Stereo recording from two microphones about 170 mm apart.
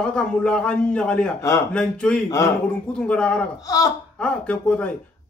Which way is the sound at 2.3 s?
20° left (ahead or behind).